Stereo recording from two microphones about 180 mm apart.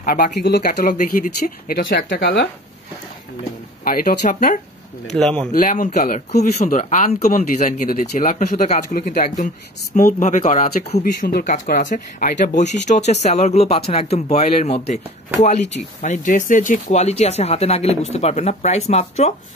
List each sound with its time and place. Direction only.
0.0 s speech: 50° left (ahead or behind)
3.8 s speech: 50° left (ahead or behind)
5.1 s speech: 5° left (ahead or behind)
5.5 s speech: 45° left (ahead or behind)
11.2 s speech: 50° left (ahead or behind); by 15.0 s 35° left (ahead or behind)
16.0 s speech: 45° left (ahead or behind)